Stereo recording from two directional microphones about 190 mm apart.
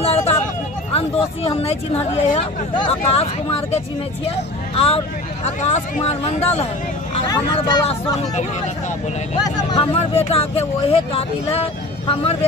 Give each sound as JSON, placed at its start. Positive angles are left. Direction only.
{"t": 0.0, "sound": "a sound", "side_deg": 30}
{"t": 0.9, "sound": "speech", "side_deg": 30}
{"t": 7.5, "sound": "speech", "side_deg": 20}
{"t": 7.9, "sound": "speech", "side_deg": 35}
{"t": 9.7, "sound": "speech", "side_deg": 30}